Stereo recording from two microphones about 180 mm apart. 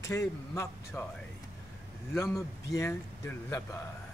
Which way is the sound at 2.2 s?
15° left (ahead or behind).